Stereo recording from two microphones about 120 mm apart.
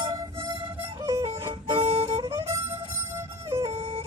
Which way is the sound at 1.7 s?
55° right (ahead or behind).